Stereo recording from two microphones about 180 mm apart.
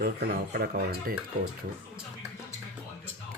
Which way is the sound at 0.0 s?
55° right (ahead or behind).